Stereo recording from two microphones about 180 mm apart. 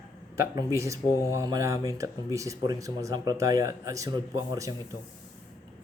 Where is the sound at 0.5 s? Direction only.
15° right (ahead or behind).